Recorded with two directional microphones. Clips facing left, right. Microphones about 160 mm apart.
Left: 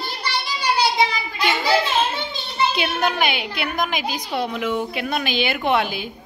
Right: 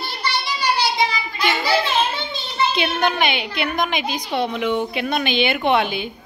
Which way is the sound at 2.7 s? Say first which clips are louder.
Right 2 dB; 5° left (ahead or behind).